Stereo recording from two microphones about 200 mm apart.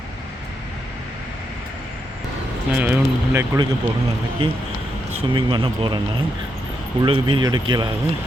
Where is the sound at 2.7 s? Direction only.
10° right (ahead or behind).